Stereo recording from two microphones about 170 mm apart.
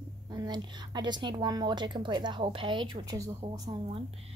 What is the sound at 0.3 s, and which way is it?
Speech, 25° right (ahead or behind).